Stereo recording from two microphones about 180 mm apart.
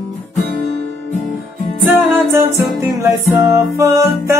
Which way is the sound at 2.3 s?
15° right (ahead or behind).